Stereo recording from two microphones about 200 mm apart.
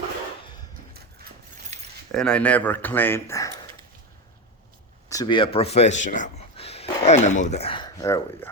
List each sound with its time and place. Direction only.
1.7 s keys jangling: 35° right (ahead or behind)
2.1 s speech: 5° left (ahead or behind)
5.0 s speech: 15° left (ahead or behind)